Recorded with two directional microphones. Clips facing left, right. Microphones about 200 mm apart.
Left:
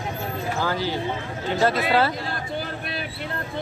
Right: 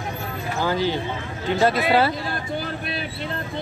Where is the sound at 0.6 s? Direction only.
20° right (ahead or behind).